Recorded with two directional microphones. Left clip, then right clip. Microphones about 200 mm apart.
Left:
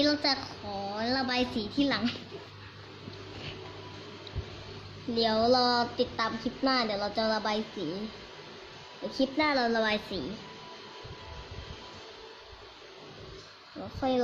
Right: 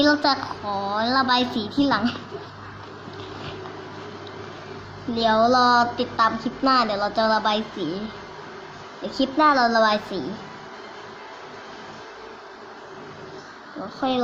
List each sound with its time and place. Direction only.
0.0 s a woman's voice: 30° left (ahead or behind)
5.1 s a woman's voice: 25° left (ahead or behind)
9.1 s a woman's voice: 25° left (ahead or behind)